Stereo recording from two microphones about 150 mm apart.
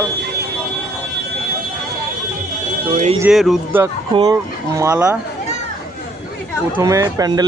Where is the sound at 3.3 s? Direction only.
Centre (ahead or behind).